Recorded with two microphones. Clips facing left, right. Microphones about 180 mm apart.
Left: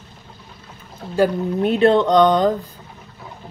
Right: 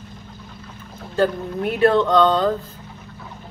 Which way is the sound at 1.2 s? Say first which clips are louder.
Left 2 dB; 10° left (ahead or behind).